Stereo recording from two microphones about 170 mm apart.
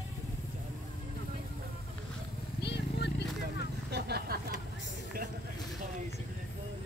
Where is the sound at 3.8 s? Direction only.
70° right (ahead or behind).